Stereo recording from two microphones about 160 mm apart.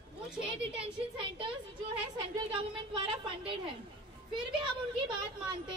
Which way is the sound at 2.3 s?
30° right (ahead or behind).